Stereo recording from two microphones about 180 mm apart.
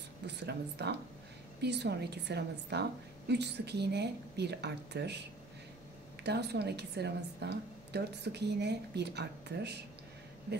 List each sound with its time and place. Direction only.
0.3 s a woman's voice: 70° right (ahead or behind)
6.2 s a woman's voice: 65° right (ahead or behind)